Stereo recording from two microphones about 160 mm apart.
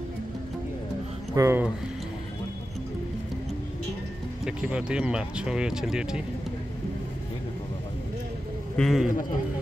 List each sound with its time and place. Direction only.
1.3 s speech: 15° right (ahead or behind)
4.5 s speech: 5° right (ahead or behind)
8.7 s speech: centre (ahead or behind)